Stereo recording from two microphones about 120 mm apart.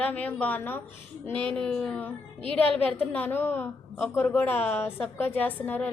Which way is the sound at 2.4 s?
50° right (ahead or behind).